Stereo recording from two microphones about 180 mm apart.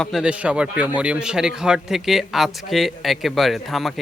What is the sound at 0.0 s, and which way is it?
A man's voice, centre (ahead or behind).